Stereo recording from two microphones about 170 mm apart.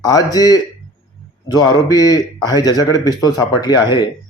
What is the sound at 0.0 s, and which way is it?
A man's voice, 20° left (ahead or behind).